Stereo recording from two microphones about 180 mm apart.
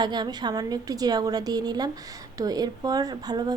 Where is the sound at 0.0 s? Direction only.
25° right (ahead or behind).